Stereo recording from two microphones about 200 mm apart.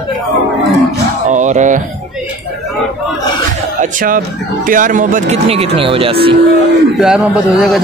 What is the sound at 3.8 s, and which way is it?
Speech, 45° right (ahead or behind).